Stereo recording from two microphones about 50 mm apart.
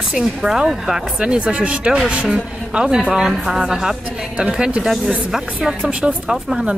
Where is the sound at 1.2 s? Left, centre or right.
Right.